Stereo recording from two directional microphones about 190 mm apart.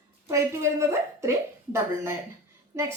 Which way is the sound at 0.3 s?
15° right (ahead or behind).